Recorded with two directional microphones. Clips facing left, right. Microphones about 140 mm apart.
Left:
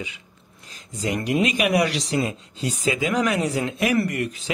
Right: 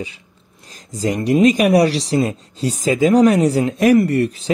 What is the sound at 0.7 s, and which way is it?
Speech, 35° right (ahead or behind).